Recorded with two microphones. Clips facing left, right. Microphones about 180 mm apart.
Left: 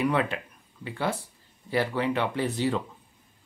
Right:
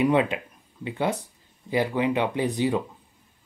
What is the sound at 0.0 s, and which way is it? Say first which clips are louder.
Speech: right 4 dB; 20° right (ahead or behind).